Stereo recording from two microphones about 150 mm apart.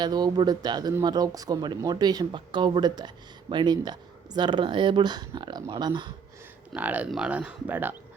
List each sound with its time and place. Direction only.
0.0 s speech: 30° right (ahead or behind)
6.7 s speech: 10° right (ahead or behind)